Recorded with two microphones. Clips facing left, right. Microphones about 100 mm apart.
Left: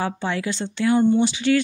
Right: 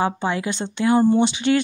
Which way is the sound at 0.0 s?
20° right (ahead or behind).